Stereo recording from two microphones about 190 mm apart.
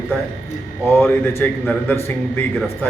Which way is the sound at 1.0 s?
10° left (ahead or behind).